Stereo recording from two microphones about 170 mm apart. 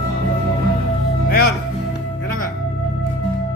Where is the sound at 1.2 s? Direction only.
65° left (ahead or behind).